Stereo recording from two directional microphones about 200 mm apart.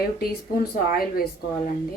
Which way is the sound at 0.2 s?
50° left (ahead or behind).